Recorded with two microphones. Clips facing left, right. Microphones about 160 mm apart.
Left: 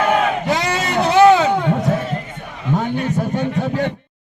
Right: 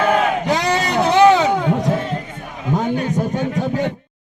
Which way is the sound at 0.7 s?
15° right (ahead or behind).